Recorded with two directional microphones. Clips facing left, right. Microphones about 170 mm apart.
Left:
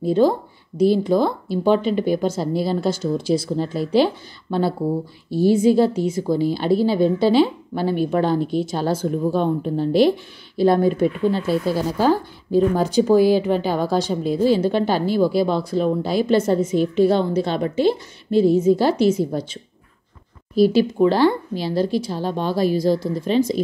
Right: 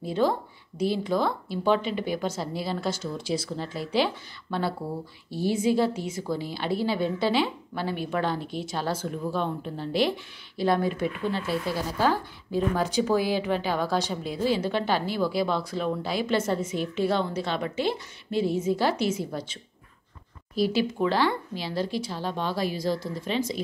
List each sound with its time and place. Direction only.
0.0 s a woman's voice: 35° left (ahead or behind)